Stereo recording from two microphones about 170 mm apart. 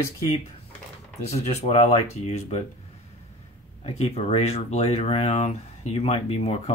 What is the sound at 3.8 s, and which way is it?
Speech, 40° left (ahead or behind).